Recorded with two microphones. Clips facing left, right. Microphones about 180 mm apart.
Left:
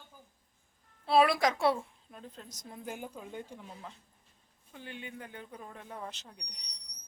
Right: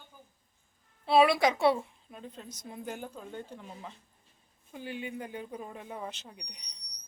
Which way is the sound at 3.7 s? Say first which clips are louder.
Right 2 dB; 5° right (ahead or behind).